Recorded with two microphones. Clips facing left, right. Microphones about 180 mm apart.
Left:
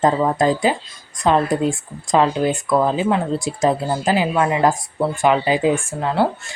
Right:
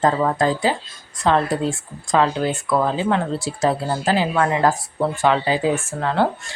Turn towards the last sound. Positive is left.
turn(degrees=10)  # may be behind; listen again after turning